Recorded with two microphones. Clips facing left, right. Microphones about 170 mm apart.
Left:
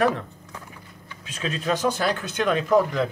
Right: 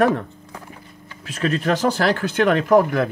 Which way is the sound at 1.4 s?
60° right (ahead or behind).